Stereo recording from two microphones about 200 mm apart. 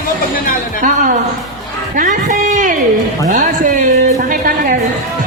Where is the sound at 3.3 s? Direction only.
40° right (ahead or behind).